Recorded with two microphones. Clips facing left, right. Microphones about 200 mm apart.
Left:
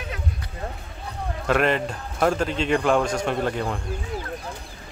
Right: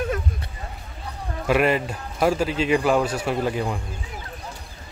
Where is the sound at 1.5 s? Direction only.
5° right (ahead or behind).